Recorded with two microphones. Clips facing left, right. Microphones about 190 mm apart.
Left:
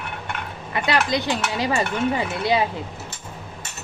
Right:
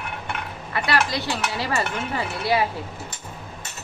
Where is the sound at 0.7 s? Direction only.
20° left (ahead or behind).